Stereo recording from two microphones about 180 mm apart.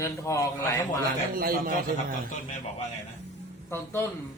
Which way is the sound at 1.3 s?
55° right (ahead or behind).